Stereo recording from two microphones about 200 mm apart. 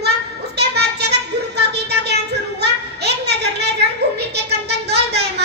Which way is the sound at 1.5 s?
55° right (ahead or behind).